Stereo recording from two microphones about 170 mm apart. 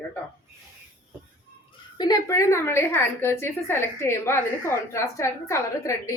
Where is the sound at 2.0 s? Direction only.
20° left (ahead or behind).